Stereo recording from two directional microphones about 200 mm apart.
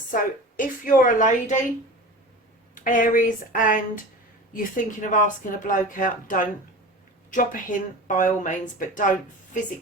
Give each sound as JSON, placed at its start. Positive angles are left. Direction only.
{"t": 0.1, "sound": "speech", "side_deg": 40}
{"t": 2.7, "sound": "speech", "side_deg": 40}